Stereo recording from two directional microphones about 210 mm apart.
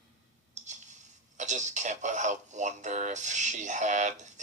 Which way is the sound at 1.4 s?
35° right (ahead or behind).